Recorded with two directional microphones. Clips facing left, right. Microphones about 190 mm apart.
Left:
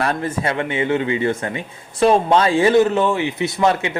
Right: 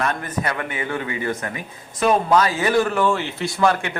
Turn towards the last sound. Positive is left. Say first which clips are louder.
# left 2 dB
turn(degrees=25)  # may be behind; listen again after turning